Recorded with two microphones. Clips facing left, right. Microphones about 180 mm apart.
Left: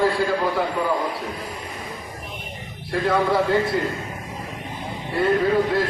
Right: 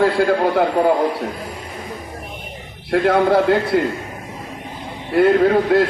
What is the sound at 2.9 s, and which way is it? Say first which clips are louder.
Speech: right 6 dB; 65° right (ahead or behind).